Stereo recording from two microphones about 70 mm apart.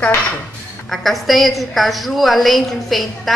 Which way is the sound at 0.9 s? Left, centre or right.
Centre.